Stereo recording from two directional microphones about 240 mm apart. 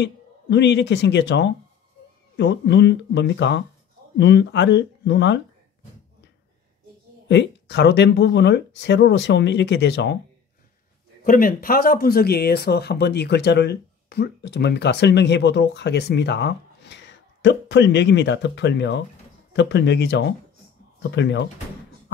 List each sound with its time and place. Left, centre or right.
0.0 s speech: left
7.2 s speech: left
11.2 s speech: left